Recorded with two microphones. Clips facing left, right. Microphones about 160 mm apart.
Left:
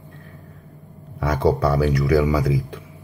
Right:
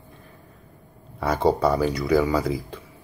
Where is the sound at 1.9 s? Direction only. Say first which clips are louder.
Left 2 dB; 15° left (ahead or behind).